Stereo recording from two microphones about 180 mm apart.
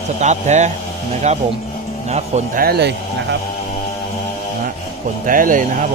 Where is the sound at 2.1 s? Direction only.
45° right (ahead or behind); by 3.0 s 65° right (ahead or behind).